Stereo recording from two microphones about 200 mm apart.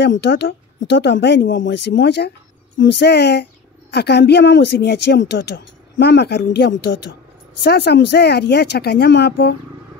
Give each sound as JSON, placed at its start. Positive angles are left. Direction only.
{"t": 0.0, "sound": "a woman's voice", "side_deg": 60}